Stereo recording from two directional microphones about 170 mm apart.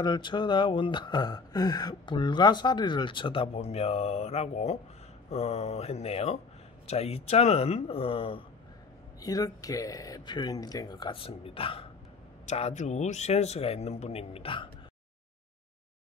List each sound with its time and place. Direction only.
0.0 s speech: 25° left (ahead or behind)
9.2 s speech: 20° left (ahead or behind)